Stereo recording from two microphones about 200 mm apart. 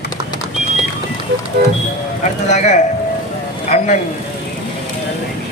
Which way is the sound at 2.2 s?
35° left (ahead or behind).